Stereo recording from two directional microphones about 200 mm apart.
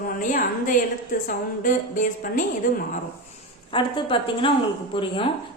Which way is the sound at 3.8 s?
25° left (ahead or behind).